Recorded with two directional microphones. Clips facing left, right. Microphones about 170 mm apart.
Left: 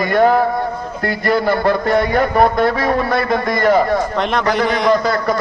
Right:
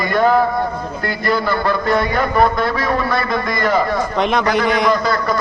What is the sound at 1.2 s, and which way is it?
A man's voice, 60° left (ahead or behind).